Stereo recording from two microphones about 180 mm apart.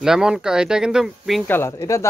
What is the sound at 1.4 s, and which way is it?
Speech, 15° left (ahead or behind).